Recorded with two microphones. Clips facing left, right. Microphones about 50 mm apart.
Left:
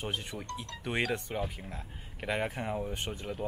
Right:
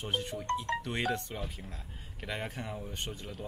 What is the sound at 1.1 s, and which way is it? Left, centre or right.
Speech, centre.